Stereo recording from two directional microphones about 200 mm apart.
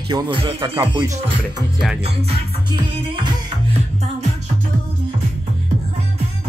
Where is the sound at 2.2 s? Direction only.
20° right (ahead or behind).